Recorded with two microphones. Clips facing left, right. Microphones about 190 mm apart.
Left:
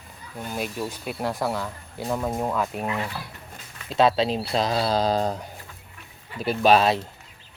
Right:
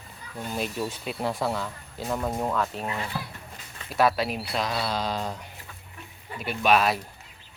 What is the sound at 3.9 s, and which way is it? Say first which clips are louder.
Speech: left 3 dB; 25° left (ahead or behind).